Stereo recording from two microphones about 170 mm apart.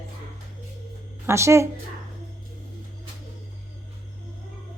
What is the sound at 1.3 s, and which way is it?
Speech, 15° right (ahead or behind).